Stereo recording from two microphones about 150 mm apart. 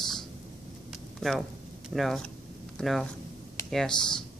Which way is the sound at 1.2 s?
5° left (ahead or behind).